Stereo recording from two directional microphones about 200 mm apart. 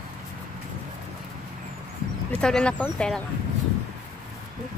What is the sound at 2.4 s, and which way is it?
Speech, 5° left (ahead or behind).